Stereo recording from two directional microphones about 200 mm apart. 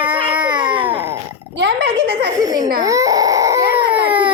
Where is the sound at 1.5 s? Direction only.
60° right (ahead or behind).